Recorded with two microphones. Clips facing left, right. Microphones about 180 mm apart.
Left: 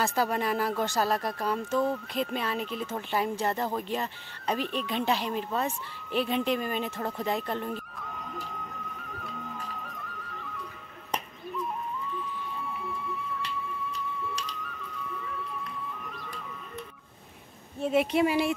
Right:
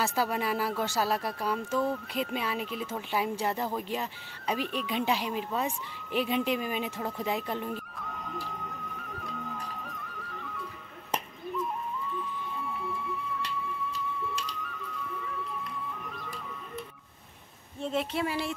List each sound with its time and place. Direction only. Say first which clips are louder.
0.0 s speech: left 2 dB; 5° right (ahead or behind)
17.7 s speech: left 6 dB; 10° left (ahead or behind)